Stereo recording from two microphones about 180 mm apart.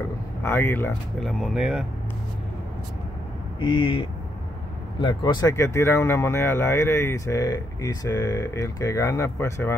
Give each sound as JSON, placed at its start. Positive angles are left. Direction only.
{"t": 0.4, "sound": "speech", "side_deg": 15}
{"t": 1.2, "sound": "speech", "side_deg": 0}
{"t": 3.5, "sound": "speech", "side_deg": 25}
{"t": 5.0, "sound": "speech", "side_deg": 25}